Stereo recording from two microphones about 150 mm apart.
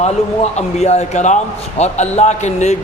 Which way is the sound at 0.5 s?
45° left (ahead or behind).